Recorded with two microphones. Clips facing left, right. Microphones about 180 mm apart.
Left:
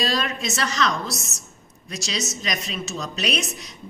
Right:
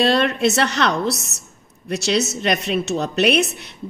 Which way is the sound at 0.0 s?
65° right (ahead or behind).